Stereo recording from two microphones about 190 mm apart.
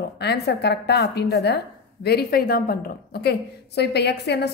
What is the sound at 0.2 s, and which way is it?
A woman's voice, 60° left (ahead or behind).